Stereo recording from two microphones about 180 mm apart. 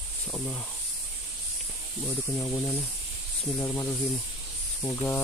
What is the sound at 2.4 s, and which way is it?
Speech, 5° left (ahead or behind).